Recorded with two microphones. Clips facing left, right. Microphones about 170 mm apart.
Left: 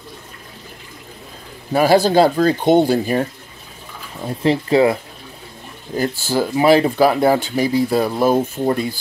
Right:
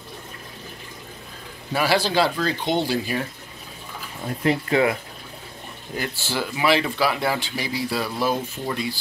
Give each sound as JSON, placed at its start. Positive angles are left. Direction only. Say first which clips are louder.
{"t": 1.7, "sound": "speech", "louder": "left 8 dB", "side_deg": 45}
{"t": 4.4, "sound": "speech", "louder": "left 6 dB", "side_deg": 30}
{"t": 5.9, "sound": "speech", "louder": "left 8 dB", "side_deg": 40}